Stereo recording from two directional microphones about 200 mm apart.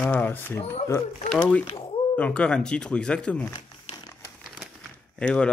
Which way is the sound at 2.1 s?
5° left (ahead or behind).